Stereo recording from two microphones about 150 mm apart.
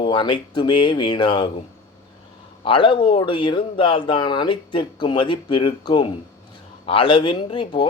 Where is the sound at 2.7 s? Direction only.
35° left (ahead or behind).